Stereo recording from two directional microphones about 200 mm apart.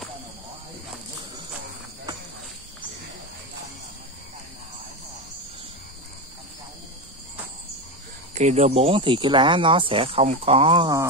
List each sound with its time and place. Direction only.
8.4 s speech: 35° right (ahead or behind)